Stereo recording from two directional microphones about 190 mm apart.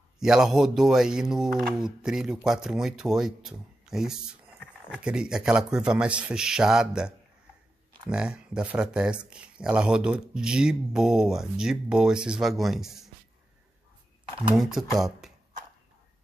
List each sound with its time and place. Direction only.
0.2 s speech: 5° right (ahead or behind)
14.5 s speech: centre (ahead or behind)